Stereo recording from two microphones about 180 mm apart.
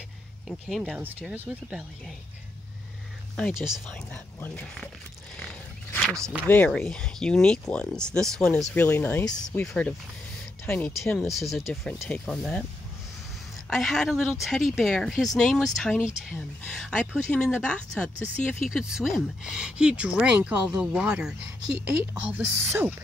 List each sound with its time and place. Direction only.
0.5 s speech: centre (ahead or behind)
3.3 s speech: centre (ahead or behind)
5.4 s wild animals: 5° left (ahead or behind)
6.1 s speech: 15° right (ahead or behind)
6.4 s speech: 10° left (ahead or behind)
9.2 s speech: 20° left (ahead or behind)
10.6 s speech: 5° left (ahead or behind)
13.7 s speech: centre (ahead or behind)